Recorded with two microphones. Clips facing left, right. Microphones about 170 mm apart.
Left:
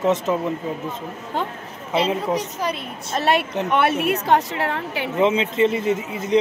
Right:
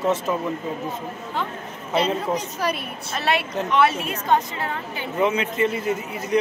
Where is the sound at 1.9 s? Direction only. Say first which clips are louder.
Left 1 dB; 20° left (ahead or behind).